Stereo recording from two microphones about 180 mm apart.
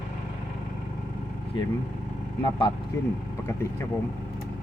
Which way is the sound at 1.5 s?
25° left (ahead or behind).